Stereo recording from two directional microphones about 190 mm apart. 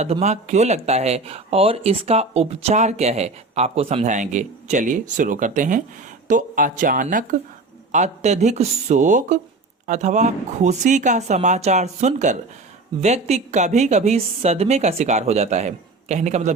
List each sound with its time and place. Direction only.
0.0 s speech: 35° right (ahead or behind)